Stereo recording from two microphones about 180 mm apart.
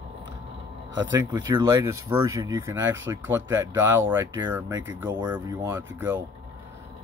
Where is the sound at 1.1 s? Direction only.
20° right (ahead or behind).